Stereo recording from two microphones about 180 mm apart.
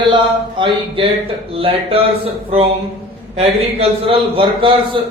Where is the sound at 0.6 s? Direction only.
25° right (ahead or behind).